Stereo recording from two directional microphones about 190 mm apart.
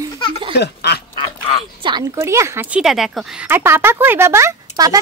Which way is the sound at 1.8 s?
25° right (ahead or behind).